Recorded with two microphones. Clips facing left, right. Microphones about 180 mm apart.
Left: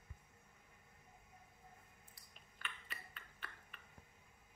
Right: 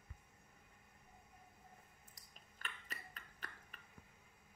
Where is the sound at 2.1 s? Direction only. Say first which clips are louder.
Even; 40° right (ahead or behind).